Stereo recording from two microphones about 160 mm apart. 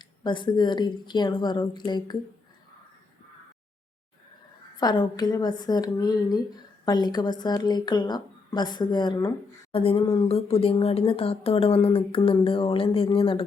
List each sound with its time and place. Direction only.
0.0 s a woman's voice: 30° left (ahead or behind)
4.8 s a woman's voice: 25° left (ahead or behind)